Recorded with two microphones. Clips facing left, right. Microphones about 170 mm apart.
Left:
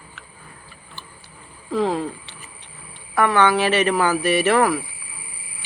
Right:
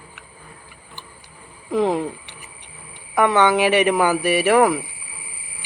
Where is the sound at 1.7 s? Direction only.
20° right (ahead or behind).